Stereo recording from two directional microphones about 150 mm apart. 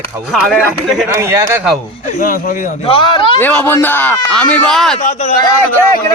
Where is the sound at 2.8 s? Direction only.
35° left (ahead or behind).